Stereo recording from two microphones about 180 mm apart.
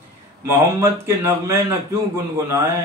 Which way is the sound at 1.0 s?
15° right (ahead or behind).